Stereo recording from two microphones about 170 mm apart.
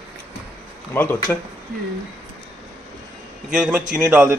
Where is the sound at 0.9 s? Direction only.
15° left (ahead or behind).